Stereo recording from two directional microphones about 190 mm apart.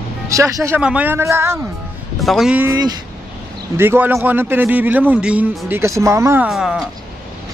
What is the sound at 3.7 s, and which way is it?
A man's voice, 10° right (ahead or behind).